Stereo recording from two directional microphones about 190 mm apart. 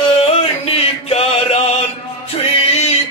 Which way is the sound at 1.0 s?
30° left (ahead or behind).